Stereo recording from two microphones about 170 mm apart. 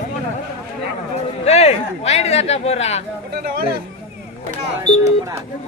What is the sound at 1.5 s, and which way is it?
Speech, 40° left (ahead or behind).